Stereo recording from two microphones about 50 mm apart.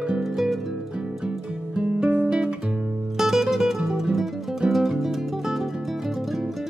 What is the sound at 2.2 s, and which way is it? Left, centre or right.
Guitar, right.